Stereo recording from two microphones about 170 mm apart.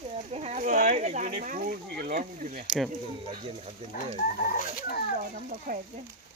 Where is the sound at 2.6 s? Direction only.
Centre (ahead or behind).